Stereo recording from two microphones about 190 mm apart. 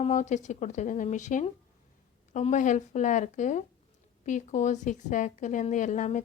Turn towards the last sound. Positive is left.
turn(degrees=40)  # may be behind; listen again after turning